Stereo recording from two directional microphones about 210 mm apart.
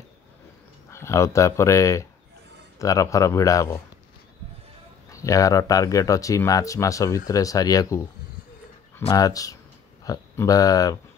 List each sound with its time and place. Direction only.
0.8 s speech: 15° left (ahead or behind)
5.1 s speech: 15° left (ahead or behind)
9.0 s speech: 15° left (ahead or behind)